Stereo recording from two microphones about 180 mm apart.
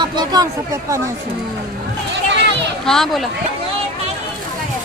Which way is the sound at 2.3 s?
80° right.